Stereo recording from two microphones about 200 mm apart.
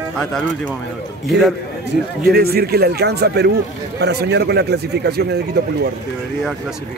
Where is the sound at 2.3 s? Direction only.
50° right (ahead or behind).